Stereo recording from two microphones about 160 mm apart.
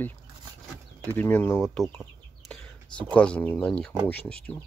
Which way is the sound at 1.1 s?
10° left (ahead or behind).